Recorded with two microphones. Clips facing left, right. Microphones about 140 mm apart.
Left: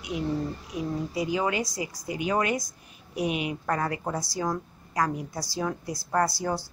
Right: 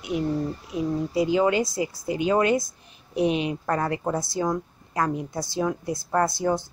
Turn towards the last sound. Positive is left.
turn(degrees=-20)  # may be behind; listen again after turning